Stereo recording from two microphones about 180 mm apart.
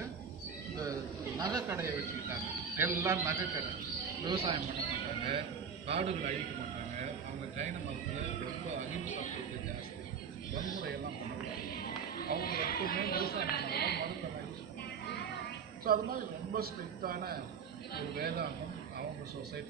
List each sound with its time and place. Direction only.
1.4 s a man's voice: 15° right (ahead or behind)
4.3 s a man's voice: 30° right (ahead or behind)
5.9 s a man's voice: 35° right (ahead or behind)
12.4 s speech: 55° left (ahead or behind)
15.8 s a man's voice: 55° right (ahead or behind)